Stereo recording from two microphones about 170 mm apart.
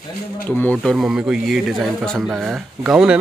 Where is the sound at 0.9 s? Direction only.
5° right (ahead or behind).